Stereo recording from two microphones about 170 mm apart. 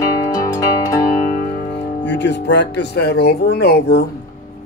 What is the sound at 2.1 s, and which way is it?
Music, 90° left.